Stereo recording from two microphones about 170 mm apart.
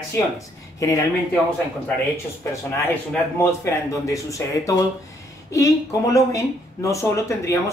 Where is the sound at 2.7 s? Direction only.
15° left (ahead or behind).